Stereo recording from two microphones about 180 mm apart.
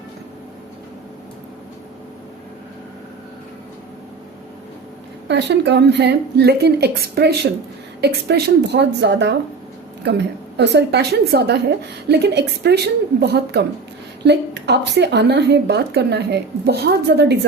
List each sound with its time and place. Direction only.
5.3 s a woman's voice: 75° right (ahead or behind)
10.6 s a woman's voice: 70° right (ahead or behind)